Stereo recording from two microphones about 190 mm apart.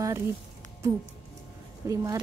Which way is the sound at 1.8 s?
15° right (ahead or behind).